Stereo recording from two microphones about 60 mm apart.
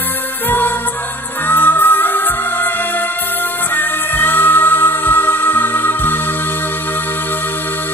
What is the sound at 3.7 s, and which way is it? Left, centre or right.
Music, left.